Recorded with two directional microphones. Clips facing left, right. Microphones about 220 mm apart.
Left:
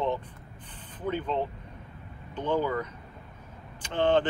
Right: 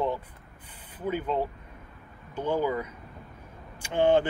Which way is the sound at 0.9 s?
10° right (ahead or behind).